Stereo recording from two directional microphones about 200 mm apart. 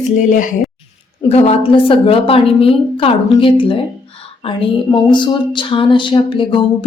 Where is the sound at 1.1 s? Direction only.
30° left (ahead or behind).